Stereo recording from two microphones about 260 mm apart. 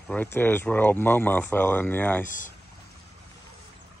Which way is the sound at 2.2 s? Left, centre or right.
Left.